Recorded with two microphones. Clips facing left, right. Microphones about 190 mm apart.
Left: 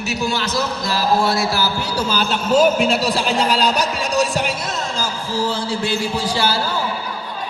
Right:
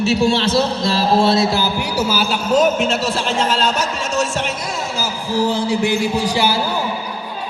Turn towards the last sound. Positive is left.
turn(degrees=-15)  # may be behind; listen again after turning